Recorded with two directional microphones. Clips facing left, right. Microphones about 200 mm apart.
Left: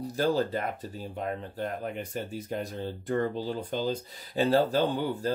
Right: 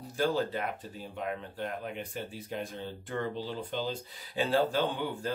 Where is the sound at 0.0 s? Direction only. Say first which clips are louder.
Left 3 dB; 40° left (ahead or behind).